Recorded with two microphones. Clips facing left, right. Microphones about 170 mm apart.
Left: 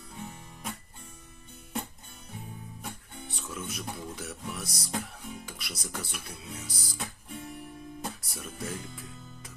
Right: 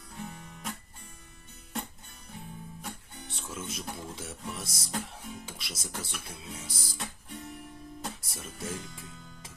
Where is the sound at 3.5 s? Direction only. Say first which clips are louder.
Left 1 dB; 25° right (ahead or behind).